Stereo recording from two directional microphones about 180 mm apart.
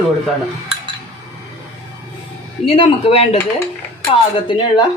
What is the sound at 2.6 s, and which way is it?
A woman's voice, 30° left (ahead or behind).